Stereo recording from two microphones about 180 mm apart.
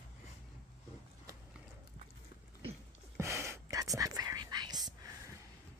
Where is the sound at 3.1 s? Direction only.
15° right (ahead or behind).